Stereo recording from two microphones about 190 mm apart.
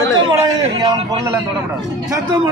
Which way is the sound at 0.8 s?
20° right (ahead or behind).